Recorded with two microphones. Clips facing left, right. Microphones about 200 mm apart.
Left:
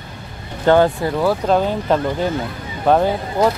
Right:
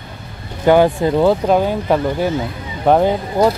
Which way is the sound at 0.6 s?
15° right (ahead or behind).